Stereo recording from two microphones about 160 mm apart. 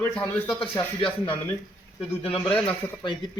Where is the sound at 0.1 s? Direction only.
10° left (ahead or behind).